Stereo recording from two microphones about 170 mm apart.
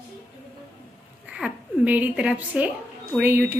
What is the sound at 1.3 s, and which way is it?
A woman's voice, 5° right (ahead or behind).